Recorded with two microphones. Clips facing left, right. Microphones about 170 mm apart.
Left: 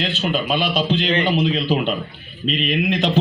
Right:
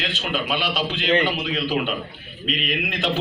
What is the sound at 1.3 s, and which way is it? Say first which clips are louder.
Speech: left 6 dB; 35° left (ahead or behind).